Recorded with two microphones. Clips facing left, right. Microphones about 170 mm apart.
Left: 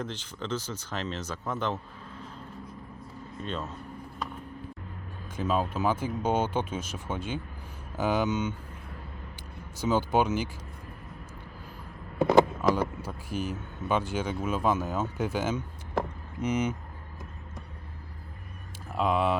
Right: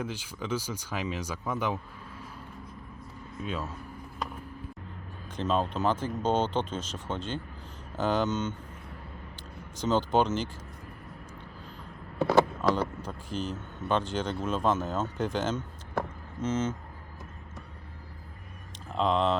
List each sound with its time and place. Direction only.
0.0 s speech: 10° right (ahead or behind)
3.4 s speech: 10° right (ahead or behind)
5.4 s speech: 10° left (ahead or behind)
9.7 s speech: 10° left (ahead or behind)
12.2 s speech: 15° left (ahead or behind)
18.9 s speech: 10° left (ahead or behind)